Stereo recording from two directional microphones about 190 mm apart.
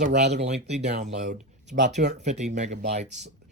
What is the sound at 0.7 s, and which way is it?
Speech, 35° right (ahead or behind).